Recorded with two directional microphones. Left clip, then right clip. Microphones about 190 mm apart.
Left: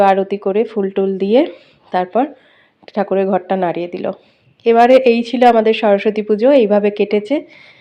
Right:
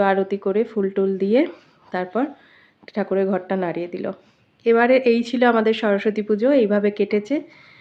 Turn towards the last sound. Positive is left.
turn(degrees=10)  # may be behind; listen again after turning